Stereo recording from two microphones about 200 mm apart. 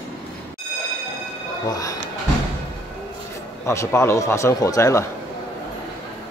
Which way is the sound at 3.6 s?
15° left (ahead or behind).